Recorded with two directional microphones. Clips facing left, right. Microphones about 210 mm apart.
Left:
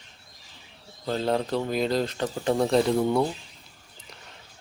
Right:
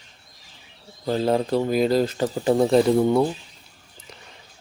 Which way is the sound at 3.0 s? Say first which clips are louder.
Right 4 dB; 20° right (ahead or behind).